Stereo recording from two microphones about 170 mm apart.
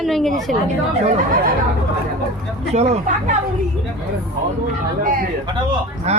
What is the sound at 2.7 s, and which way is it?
Speech, 40° right (ahead or behind).